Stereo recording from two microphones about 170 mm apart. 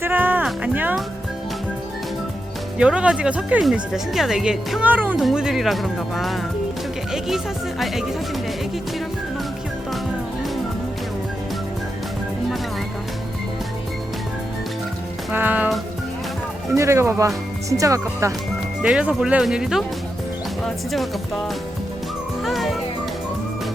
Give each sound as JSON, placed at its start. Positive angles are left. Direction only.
{"t": 0.0, "sound": "music", "side_deg": -10}
{"t": 2.7, "sound": "speech", "side_deg": -5}
{"t": 15.3, "sound": "speech", "side_deg": -10}
{"t": 18.8, "sound": "speech", "side_deg": -5}
{"t": 22.4, "sound": "music", "side_deg": 0}